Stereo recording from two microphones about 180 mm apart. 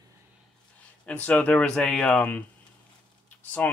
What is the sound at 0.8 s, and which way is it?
Speech, 10° left (ahead or behind).